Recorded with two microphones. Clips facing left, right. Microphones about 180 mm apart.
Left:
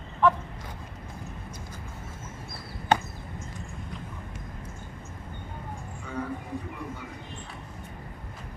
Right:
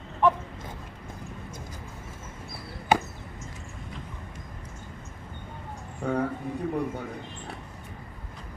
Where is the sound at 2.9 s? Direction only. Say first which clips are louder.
Right 1 dB; 10° right (ahead or behind).